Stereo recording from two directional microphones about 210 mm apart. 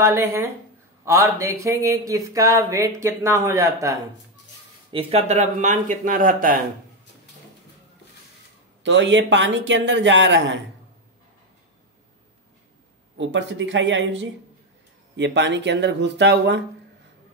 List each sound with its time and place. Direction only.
0.0 s speech: 10° right (ahead or behind)
4.9 s speech: 30° right (ahead or behind)
8.8 s speech: 60° right (ahead or behind)
13.2 s speech: 60° right (ahead or behind)